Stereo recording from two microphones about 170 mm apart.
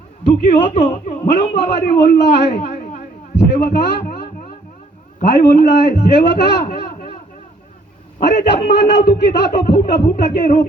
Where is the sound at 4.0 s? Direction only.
70° left (ahead or behind).